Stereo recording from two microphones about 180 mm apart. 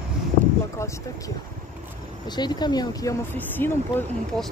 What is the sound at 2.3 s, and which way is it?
Speech, 25° left (ahead or behind).